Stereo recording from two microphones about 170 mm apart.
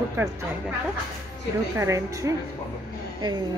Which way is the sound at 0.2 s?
15° right (ahead or behind).